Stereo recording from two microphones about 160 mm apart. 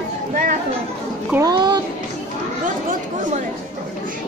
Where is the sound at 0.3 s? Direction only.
55° right (ahead or behind).